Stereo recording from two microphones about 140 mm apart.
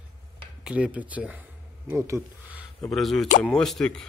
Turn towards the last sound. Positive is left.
turn(degrees=5)  # may be behind; listen again after turning